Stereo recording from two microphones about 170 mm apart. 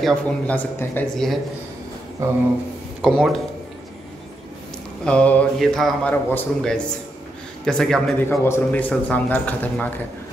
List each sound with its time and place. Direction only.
0.0 s speech: 10° left (ahead or behind)
2.2 s speech: 15° right (ahead or behind)
3.0 s speech: centre (ahead or behind)
5.0 s speech: 5° left (ahead or behind)